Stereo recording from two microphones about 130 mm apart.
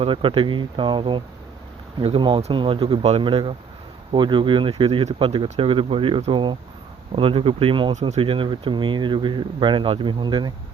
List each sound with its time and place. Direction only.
0.0 s speech: 45° right (ahead or behind)